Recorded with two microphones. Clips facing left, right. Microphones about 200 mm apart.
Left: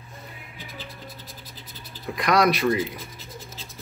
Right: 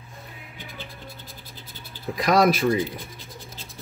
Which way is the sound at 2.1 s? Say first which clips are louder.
Right 2 dB; centre (ahead or behind).